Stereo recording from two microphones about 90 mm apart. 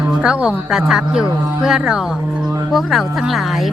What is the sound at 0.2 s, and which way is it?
A woman's voice, 10° right (ahead or behind).